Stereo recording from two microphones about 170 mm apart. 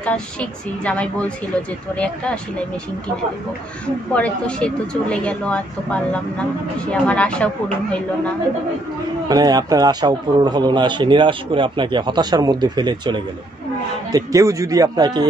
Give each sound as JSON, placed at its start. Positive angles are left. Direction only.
{"t": 0.0, "sound": "speech", "side_deg": 5}
{"t": 3.8, "sound": "speech", "side_deg": 5}
{"t": 9.3, "sound": "a man's voice", "side_deg": -25}